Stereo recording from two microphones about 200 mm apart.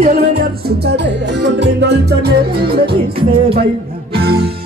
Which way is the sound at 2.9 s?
25° right (ahead or behind).